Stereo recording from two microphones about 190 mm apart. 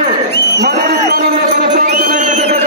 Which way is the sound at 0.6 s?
55° right (ahead or behind).